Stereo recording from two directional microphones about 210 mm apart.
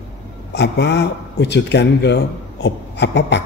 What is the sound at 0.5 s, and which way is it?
Speech, 55° left (ahead or behind).